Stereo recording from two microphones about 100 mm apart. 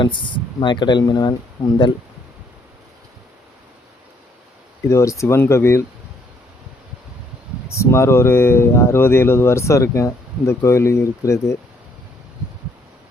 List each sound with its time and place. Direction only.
0.0 s speech: 55° left (ahead or behind)
4.9 s speech: 30° left (ahead or behind)
7.8 s speech: 30° left (ahead or behind)